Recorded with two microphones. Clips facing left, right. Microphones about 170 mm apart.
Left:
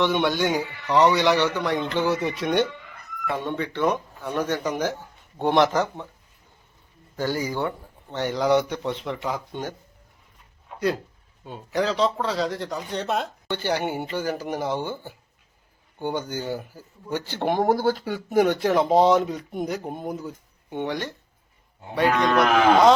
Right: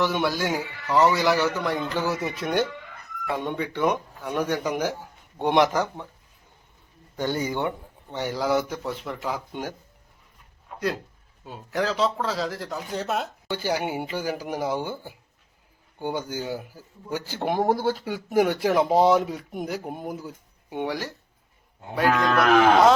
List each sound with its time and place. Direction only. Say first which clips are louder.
0.0 s speech: left 2 dB; centre (ahead or behind)
7.2 s speech: even; 20° right (ahead or behind)
8.1 s speech: left 3 dB; 10° right (ahead or behind)
11.4 s speech: left 2 dB; centre (ahead or behind)